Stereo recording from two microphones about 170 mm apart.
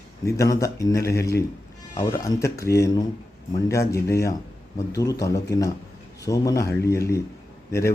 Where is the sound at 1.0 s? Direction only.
70° left (ahead or behind).